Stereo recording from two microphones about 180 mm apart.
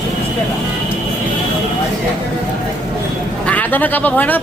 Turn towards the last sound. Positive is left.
turn(degrees=10)  # may be behind; listen again after turning